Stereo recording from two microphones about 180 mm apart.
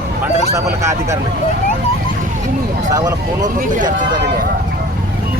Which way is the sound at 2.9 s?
20° right (ahead or behind).